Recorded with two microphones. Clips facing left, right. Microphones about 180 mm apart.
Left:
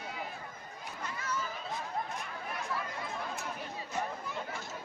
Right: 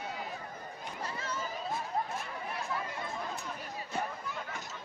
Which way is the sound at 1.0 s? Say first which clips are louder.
Left 1 dB; 30° right (ahead or behind).